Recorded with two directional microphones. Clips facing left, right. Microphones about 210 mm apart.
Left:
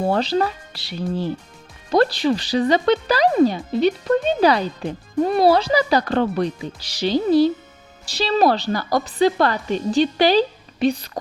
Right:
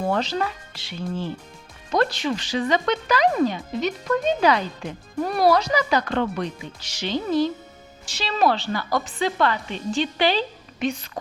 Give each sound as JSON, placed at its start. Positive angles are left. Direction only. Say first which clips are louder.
{"t": 0.0, "sound": "speech", "louder": "left 4 dB", "side_deg": 35}